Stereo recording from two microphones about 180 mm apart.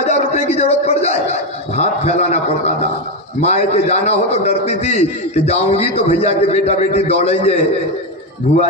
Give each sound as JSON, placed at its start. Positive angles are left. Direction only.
{"t": 0.0, "sound": "a man's voice", "side_deg": 35}